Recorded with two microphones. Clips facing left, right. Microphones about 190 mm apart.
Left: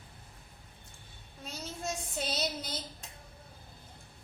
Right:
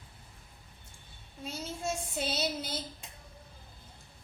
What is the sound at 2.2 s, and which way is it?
Speech, 5° right (ahead or behind).